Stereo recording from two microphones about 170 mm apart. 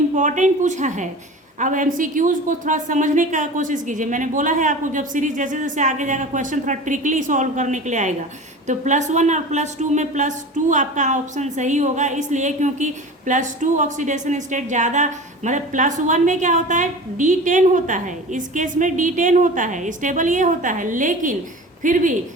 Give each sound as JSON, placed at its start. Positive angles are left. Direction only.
{"t": 0.2, "sound": "a woman's voice", "side_deg": -45}